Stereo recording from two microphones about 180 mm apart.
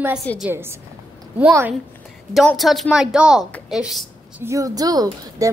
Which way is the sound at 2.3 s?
Centre (ahead or behind).